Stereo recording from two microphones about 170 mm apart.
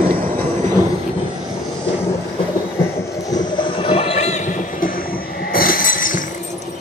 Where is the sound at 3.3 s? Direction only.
25° left (ahead or behind).